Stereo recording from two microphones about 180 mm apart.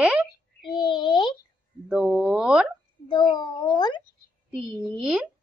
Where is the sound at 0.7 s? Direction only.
25° left (ahead or behind).